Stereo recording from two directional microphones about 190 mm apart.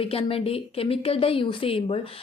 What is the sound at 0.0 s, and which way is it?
A woman's voice, 30° left (ahead or behind).